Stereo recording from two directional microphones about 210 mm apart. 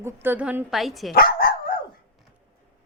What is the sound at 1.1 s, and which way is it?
Dog, 45° left (ahead or behind).